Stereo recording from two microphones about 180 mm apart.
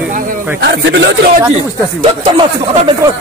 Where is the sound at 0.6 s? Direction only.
85° right.